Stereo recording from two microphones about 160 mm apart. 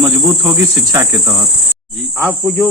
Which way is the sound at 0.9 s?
20° right (ahead or behind).